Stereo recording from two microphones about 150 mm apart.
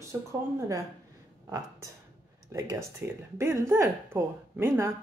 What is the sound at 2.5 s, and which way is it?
Speech, 20° right (ahead or behind).